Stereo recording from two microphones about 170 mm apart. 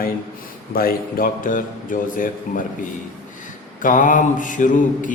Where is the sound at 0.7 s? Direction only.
60° left (ahead or behind).